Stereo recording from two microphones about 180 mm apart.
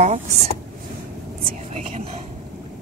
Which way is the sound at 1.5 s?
45° right (ahead or behind).